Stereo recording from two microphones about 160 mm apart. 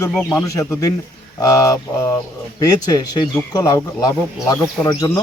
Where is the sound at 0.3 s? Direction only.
20° left (ahead or behind).